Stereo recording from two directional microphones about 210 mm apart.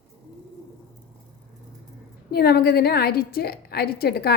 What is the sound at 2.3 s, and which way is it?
A woman's voice, 50° left (ahead or behind).